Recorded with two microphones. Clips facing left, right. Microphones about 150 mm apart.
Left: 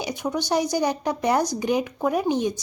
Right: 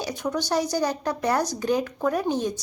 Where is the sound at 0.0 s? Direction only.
15° left (ahead or behind).